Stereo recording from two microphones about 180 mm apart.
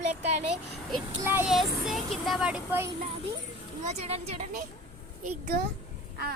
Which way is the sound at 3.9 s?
35° right (ahead or behind).